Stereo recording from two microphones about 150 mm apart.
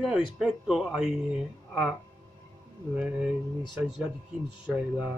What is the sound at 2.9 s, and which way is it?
Speech, 10° right (ahead or behind).